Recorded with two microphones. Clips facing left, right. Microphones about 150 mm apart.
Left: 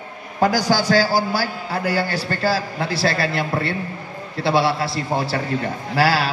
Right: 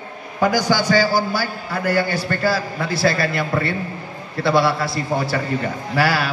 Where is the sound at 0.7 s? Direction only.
50° right (ahead or behind).